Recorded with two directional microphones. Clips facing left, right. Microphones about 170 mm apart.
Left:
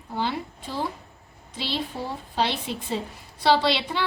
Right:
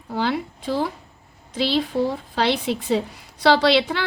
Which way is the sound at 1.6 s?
90° right.